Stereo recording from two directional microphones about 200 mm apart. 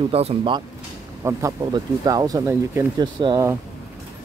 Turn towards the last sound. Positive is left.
turn(degrees=-20)  # may be behind; listen again after turning